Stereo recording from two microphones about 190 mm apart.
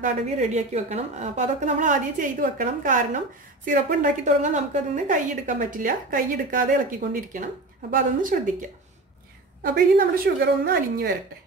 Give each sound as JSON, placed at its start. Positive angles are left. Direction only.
{"t": 0.0, "sound": "a woman's voice", "side_deg": -35}
{"t": 9.6, "sound": "a woman's voice", "side_deg": -50}